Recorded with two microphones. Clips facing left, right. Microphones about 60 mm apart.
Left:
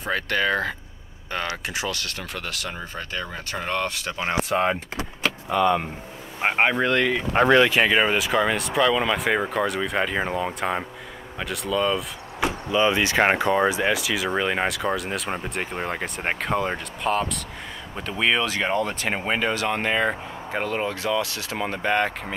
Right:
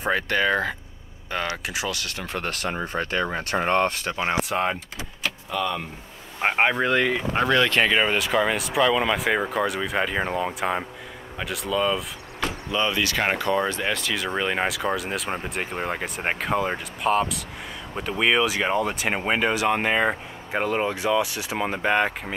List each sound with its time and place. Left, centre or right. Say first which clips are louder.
0.0 s speech: right 1 dB; centre
2.3 s speech: right 7 dB; right
2.8 s speech: right 6 dB; right
4.2 s speech: left 1 dB; centre
5.5 s speech: left 7 dB; left
6.4 s speech: even; centre
7.3 s speech: left 5 dB; centre
7.7 s speech: left 1 dB; centre
12.4 s speech: left 4 dB; centre